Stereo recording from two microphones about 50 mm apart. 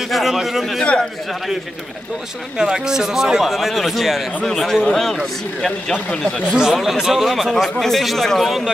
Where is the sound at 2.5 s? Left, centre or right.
Centre.